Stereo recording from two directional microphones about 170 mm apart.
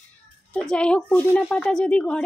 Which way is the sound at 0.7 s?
5° left (ahead or behind).